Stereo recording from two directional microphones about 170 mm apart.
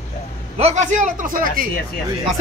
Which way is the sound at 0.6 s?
45° right (ahead or behind).